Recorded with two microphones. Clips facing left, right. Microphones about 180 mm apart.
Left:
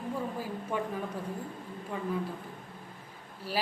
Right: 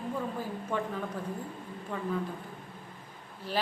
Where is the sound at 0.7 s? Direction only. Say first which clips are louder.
Even; 10° left (ahead or behind).